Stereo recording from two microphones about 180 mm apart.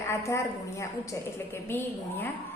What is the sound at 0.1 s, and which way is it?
A woman's voice, 15° left (ahead or behind).